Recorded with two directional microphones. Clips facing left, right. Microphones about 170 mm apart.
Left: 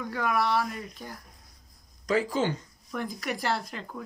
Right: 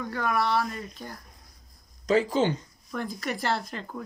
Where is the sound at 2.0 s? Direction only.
25° right (ahead or behind).